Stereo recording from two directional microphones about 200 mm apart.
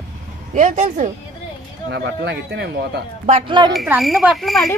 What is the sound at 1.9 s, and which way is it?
Speech, 55° right (ahead or behind).